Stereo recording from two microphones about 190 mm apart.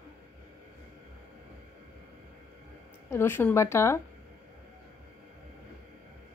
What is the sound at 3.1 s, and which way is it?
Speech, 10° left (ahead or behind).